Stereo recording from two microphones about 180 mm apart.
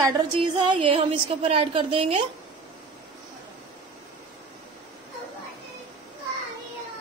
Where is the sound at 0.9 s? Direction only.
30° right (ahead or behind).